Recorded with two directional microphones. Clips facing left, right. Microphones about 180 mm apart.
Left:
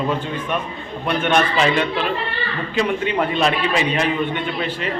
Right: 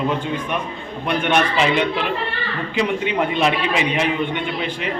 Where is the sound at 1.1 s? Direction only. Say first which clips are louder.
Even; 10° right (ahead or behind).